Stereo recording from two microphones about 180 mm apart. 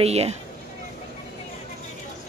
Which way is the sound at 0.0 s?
35° right (ahead or behind).